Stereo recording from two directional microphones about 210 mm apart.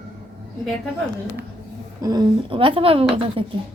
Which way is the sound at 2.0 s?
15° right (ahead or behind).